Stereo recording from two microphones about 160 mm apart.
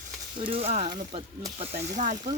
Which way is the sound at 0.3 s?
35° right (ahead or behind).